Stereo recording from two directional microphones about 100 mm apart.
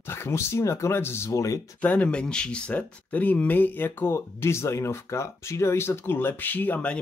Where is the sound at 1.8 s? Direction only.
15° left (ahead or behind).